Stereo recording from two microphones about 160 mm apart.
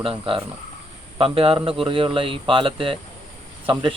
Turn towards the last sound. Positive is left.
turn(degrees=-30)  # may be behind; listen again after turning